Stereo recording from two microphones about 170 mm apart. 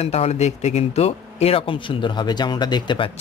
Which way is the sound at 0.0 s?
40° left (ahead or behind).